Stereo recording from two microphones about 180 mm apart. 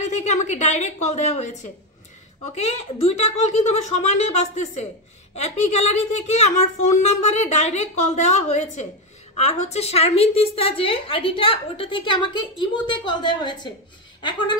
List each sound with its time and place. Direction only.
0.0 s a woman's voice: 40° left (ahead or behind); by 13.7 s 25° left (ahead or behind)